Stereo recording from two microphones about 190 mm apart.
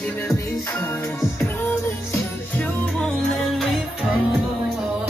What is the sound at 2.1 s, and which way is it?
Music, 10° left (ahead or behind).